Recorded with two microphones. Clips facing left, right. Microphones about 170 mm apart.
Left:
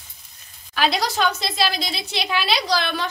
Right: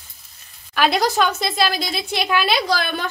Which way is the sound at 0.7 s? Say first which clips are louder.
Right 4 dB; 50° right (ahead or behind).